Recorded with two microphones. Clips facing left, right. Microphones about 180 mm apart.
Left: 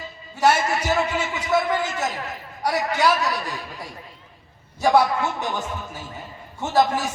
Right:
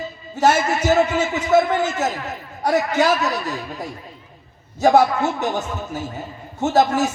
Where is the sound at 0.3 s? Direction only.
45° right (ahead or behind).